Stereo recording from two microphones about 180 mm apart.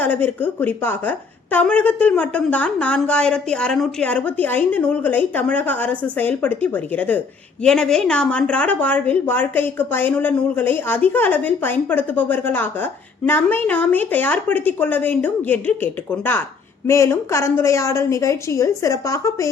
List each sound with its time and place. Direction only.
0.0 s speech: 10° left (ahead or behind)